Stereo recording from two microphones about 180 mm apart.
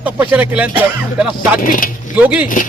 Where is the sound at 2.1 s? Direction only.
10° right (ahead or behind).